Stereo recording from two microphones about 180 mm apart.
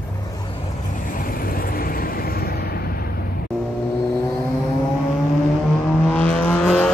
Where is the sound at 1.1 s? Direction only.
50° left (ahead or behind).